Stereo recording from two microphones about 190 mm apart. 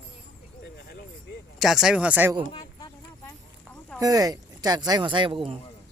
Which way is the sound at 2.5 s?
20° left (ahead or behind).